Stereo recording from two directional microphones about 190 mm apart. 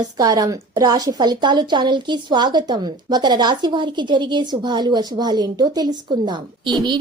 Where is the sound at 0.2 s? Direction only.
20° right (ahead or behind).